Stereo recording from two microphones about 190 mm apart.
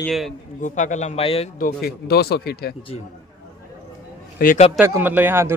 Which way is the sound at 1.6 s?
55° left (ahead or behind).